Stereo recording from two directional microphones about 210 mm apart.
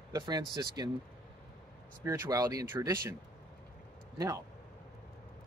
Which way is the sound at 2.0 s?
15° right (ahead or behind).